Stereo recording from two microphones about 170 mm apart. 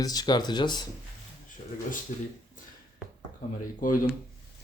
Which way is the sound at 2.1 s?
45° left (ahead or behind).